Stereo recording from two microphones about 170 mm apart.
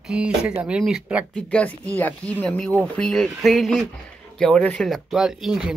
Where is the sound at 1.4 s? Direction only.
5° left (ahead or behind).